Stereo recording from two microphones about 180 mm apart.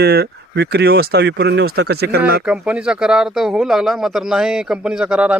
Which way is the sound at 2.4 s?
5° right (ahead or behind).